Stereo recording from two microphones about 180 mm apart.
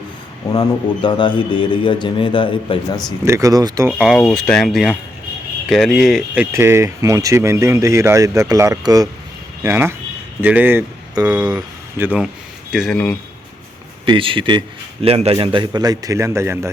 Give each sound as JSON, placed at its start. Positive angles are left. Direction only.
{"t": 1.0, "sound": "a man's voice", "side_deg": 25}
{"t": 3.2, "sound": "speech", "side_deg": -15}
{"t": 3.9, "sound": "speech", "side_deg": 0}
{"t": 12.7, "sound": "speech", "side_deg": 0}
{"t": 14.0, "sound": "a man's voice", "side_deg": -30}